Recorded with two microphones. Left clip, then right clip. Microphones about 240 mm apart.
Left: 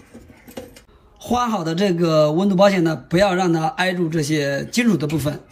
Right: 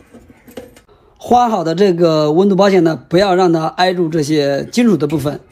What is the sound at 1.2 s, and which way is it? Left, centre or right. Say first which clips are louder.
Speech: right 9 dB; right.